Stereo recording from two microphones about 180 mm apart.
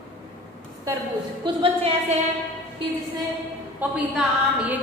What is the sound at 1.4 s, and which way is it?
Speech, 30° right (ahead or behind).